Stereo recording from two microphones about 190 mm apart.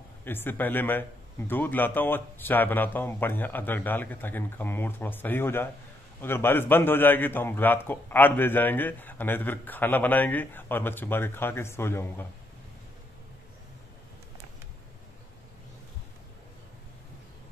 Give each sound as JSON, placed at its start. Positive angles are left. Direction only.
{"t": 0.2, "sound": "a man's voice", "side_deg": 10}